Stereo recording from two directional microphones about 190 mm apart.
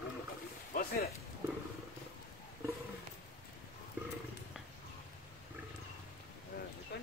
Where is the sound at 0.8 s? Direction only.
50° left (ahead or behind).